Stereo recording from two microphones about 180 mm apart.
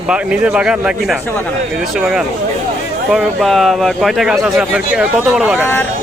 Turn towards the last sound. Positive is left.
turn(degrees=-5)  # may be behind; listen again after turning